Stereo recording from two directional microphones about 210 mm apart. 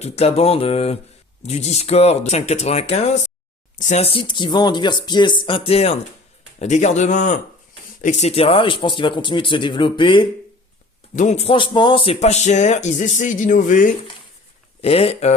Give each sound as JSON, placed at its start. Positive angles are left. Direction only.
{"t": 0.0, "sound": "speech", "side_deg": 30}
{"t": 11.1, "sound": "speech", "side_deg": 35}
{"t": 14.8, "sound": "speech", "side_deg": 30}